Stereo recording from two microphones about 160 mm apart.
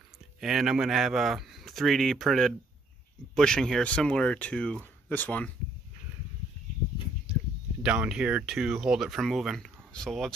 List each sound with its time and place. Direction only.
0.4 s speech: 5° right (ahead or behind)
7.8 s speech: 5° right (ahead or behind)